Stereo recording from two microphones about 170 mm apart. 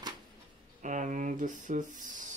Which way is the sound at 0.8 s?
45° right (ahead or behind).